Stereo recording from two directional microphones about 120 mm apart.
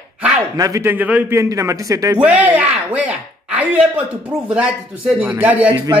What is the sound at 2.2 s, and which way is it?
A man's voice, 10° right (ahead or behind).